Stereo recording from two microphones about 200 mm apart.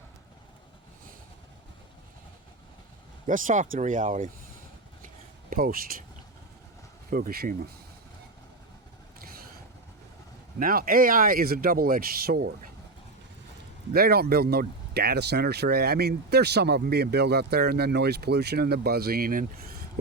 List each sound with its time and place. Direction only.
3.2 s speech: 40° right (ahead or behind)
5.5 s speech: 45° right (ahead or behind)
7.1 s speech: 45° right (ahead or behind)
9.2 s vehicle: 50° right (ahead or behind)
10.6 s speech: 45° right (ahead or behind)
13.9 s speech: 50° right (ahead or behind)